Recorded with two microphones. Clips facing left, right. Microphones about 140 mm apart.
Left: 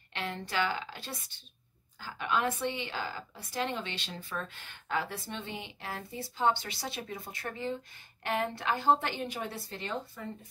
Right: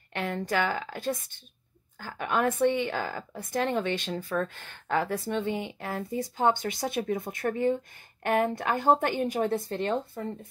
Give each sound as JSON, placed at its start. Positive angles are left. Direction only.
{"t": 0.2, "sound": "a woman's voice", "side_deg": -45}